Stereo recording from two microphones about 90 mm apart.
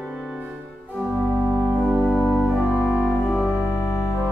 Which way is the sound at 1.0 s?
35° left (ahead or behind).